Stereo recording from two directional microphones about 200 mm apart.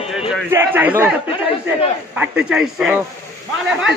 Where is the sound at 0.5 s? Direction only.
10° right (ahead or behind).